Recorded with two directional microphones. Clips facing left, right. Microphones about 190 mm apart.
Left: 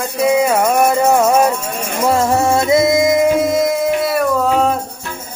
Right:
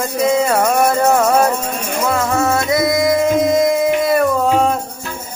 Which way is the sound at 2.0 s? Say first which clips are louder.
Left 3 dB; 35° left (ahead or behind).